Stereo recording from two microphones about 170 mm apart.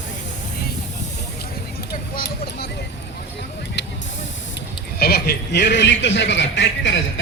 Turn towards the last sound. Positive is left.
turn(degrees=90)